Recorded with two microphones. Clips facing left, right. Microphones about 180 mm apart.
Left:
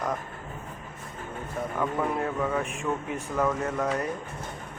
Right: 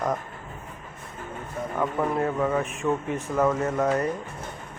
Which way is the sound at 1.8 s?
5° right (ahead or behind).